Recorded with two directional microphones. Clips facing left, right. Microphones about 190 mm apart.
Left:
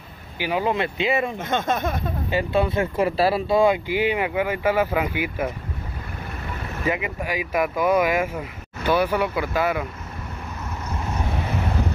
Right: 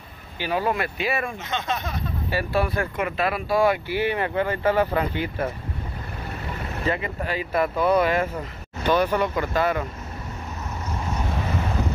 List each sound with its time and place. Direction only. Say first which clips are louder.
0.4 s speech: left 2 dB; 15° left (ahead or behind)
1.4 s speech: left 5 dB; 50° left (ahead or behind)
2.3 s speech: left 3 dB; 20° left (ahead or behind)
3.0 s speech: left 7 dB; 30° left (ahead or behind); by 5.5 s 10° left (ahead or behind)
6.8 s speech: left 1 dB; 10° left (ahead or behind)